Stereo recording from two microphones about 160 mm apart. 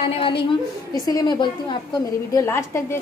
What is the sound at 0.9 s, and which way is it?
A woman's voice, 25° left (ahead or behind).